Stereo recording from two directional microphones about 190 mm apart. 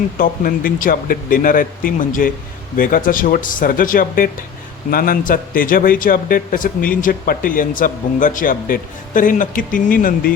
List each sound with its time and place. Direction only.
0.2 s a man's voice: 50° left (ahead or behind)